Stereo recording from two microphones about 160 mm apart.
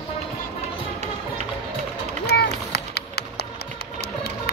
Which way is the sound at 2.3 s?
90° left.